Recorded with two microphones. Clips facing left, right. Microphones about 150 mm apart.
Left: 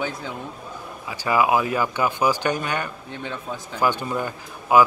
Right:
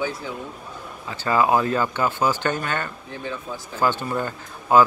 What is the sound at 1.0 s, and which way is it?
A man's voice, 15° left (ahead or behind).